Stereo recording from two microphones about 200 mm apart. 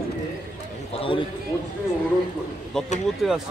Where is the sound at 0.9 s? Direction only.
25° left (ahead or behind).